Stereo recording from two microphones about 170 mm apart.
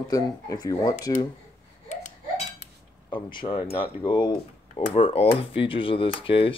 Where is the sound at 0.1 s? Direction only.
20° left (ahead or behind).